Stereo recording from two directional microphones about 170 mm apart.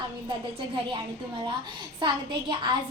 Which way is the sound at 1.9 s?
30° right (ahead or behind).